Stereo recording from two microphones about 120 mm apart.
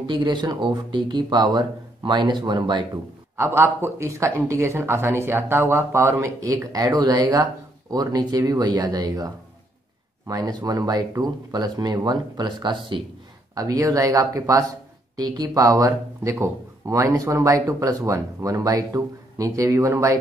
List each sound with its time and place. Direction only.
0.0 s speech: 40° right (ahead or behind)
3.3 s speech: 20° right (ahead or behind)